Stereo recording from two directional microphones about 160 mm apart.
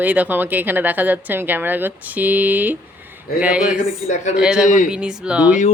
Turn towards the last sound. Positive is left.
turn(degrees=-10)  # may be behind; listen again after turning